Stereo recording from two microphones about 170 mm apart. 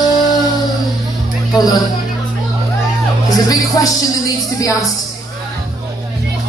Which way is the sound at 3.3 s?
20° left (ahead or behind).